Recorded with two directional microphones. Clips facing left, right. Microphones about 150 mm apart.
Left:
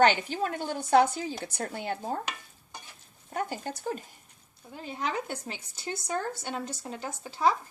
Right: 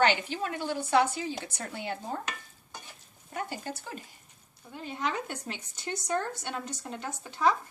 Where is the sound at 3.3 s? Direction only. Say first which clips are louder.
Left 3 dB; 45° left (ahead or behind).